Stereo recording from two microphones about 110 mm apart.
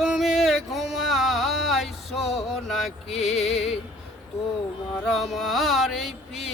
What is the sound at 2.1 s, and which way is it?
Music, 70° left (ahead or behind).